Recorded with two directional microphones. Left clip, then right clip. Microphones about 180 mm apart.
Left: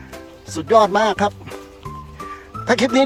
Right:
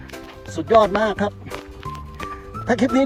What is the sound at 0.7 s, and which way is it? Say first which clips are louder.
Speech: left 2 dB; 10° left (ahead or behind).